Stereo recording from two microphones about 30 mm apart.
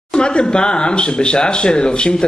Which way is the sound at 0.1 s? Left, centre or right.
Left.